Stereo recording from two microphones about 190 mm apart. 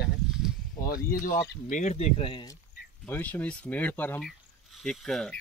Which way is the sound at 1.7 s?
40° left (ahead or behind).